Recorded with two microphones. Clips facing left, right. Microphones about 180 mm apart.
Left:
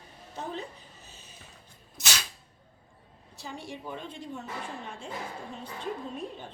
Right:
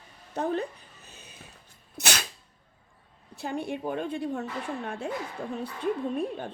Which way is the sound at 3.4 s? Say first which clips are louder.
Right 9 dB; 60° right (ahead or behind).